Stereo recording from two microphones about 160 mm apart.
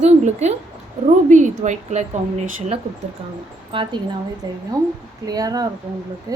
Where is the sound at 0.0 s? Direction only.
45° right (ahead or behind).